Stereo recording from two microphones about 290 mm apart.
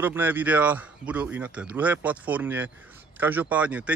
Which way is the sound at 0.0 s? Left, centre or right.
Centre.